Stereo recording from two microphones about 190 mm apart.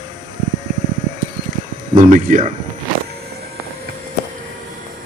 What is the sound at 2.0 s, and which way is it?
Speech, 45° right (ahead or behind).